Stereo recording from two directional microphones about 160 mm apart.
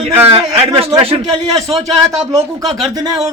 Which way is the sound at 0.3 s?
35° right (ahead or behind).